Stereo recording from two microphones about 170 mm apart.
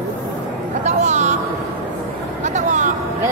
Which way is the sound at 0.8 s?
45° right (ahead or behind).